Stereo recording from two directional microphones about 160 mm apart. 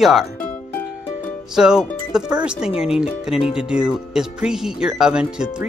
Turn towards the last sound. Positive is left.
turn(degrees=-5)  # may be behind; listen again after turning